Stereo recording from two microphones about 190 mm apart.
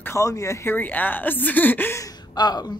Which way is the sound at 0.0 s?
15° left (ahead or behind).